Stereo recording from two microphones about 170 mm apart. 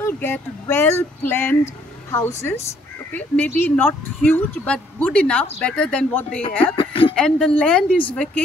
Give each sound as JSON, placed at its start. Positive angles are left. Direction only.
{"t": 0.0, "sound": "speech", "side_deg": 15}
{"t": 6.8, "sound": "a sound", "side_deg": 30}
{"t": 7.2, "sound": "a woman's voice", "side_deg": 5}